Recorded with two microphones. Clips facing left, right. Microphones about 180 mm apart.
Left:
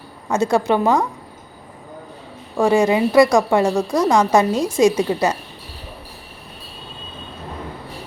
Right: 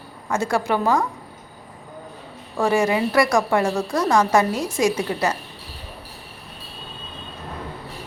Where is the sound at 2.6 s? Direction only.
15° left (ahead or behind).